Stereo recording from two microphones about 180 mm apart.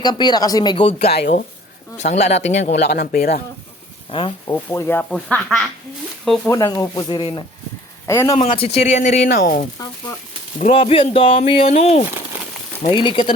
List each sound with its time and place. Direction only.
0.0 s speech: 25° left (ahead or behind)
2.0 s speech: 40° left (ahead or behind)
2.9 s speech: 60° left (ahead or behind)
4.1 s speech: 30° left (ahead or behind)
4.5 s speech: 10° left (ahead or behind)
6.5 s speech: 20° left (ahead or behind)
8.0 s a man's voice: 15° left (ahead or behind)
8.5 s speech: 35° left (ahead or behind)
9.4 s speech: 55° left (ahead or behind)
10.8 s speech: 30° left (ahead or behind)
12.9 s speech: 25° left (ahead or behind)